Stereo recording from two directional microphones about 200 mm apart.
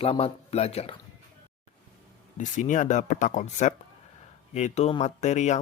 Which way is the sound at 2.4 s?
40° left (ahead or behind).